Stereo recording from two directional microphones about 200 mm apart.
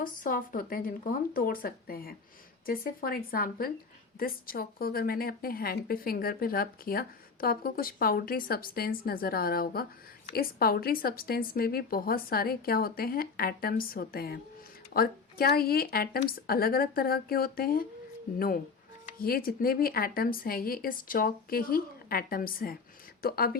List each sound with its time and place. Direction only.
0.0 s a woman's voice: 45° left (ahead or behind)